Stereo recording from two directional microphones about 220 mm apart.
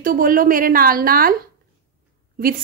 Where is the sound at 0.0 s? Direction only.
40° right (ahead or behind).